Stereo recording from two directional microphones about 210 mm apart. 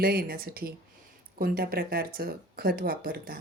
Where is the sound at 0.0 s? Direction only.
45° right (ahead or behind).